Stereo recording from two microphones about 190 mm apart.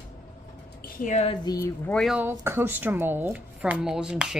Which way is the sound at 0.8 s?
45° left (ahead or behind).